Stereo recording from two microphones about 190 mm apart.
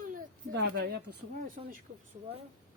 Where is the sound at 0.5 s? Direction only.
60° right (ahead or behind).